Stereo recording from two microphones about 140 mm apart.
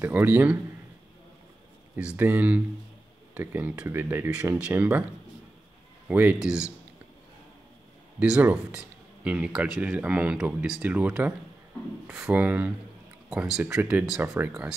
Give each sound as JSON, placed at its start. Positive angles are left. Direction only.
{"t": 0.0, "sound": "speech", "side_deg": -15}
{"t": 2.0, "sound": "speech", "side_deg": -10}
{"t": 6.0, "sound": "speech", "side_deg": -10}
{"t": 8.2, "sound": "speech", "side_deg": -10}